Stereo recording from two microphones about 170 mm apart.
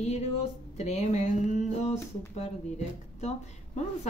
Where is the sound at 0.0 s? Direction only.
40° left (ahead or behind).